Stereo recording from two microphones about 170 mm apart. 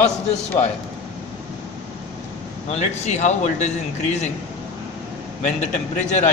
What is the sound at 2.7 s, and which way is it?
A man's voice, 40° left (ahead or behind).